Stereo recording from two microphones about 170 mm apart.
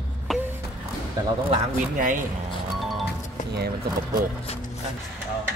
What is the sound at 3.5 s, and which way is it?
Speech, 75° right (ahead or behind).